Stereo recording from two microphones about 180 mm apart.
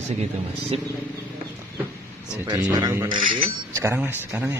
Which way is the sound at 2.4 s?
20° right (ahead or behind).